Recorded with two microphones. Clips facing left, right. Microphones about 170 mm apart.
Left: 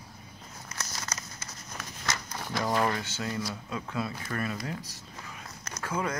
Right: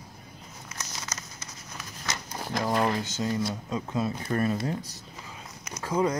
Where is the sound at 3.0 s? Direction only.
15° right (ahead or behind).